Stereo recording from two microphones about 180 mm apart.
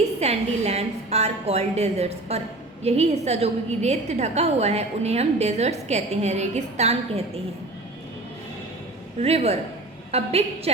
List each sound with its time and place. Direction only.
0.2 s a woman's voice: 35° right (ahead or behind)
9.1 s a woman's voice: 35° right (ahead or behind)